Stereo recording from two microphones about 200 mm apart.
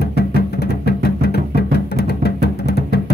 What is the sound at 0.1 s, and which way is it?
Music, 55° left (ahead or behind).